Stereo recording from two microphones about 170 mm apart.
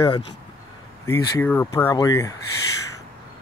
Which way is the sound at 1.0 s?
15° left (ahead or behind).